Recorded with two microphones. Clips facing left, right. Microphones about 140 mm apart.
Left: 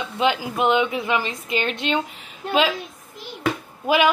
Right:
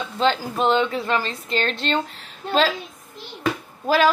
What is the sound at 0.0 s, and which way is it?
A woman's voice, 10° left (ahead or behind).